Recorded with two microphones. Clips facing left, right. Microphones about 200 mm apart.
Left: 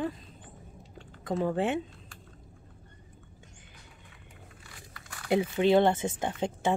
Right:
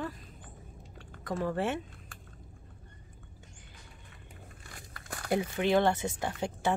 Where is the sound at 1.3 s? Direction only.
20° left (ahead or behind).